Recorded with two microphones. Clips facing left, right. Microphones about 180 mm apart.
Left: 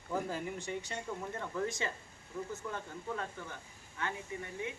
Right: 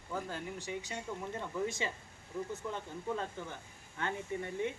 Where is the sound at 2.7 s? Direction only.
20° right (ahead or behind).